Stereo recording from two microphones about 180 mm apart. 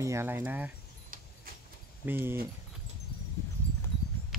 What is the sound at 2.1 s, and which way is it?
Speech, 10° right (ahead or behind).